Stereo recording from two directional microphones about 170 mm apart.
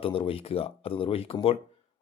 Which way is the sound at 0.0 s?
35° left (ahead or behind).